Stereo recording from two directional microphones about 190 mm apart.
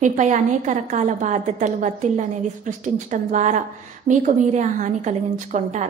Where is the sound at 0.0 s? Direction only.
40° right (ahead or behind).